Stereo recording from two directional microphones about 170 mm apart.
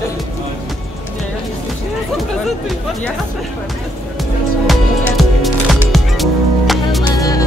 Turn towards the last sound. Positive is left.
turn(degrees=20)  # may be behind; listen again after turning